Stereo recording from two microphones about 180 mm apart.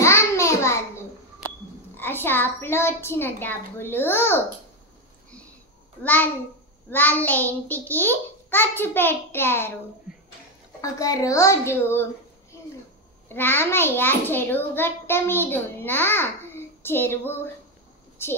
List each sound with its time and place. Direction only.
0.0 s a sound: 15° left (ahead or behind)
2.0 s a child's voice: 10° left (ahead or behind)
6.0 s a child's voice: 10° left (ahead or behind)
10.8 s a child's voice: 20° left (ahead or behind)
13.3 s a child's voice: 10° left (ahead or behind)